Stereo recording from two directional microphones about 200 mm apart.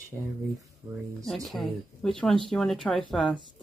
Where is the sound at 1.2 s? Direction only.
Centre (ahead or behind).